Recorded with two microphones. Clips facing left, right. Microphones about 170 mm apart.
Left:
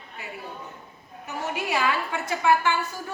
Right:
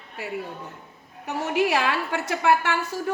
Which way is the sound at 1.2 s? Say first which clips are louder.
Right 7 dB; 75° right (ahead or behind).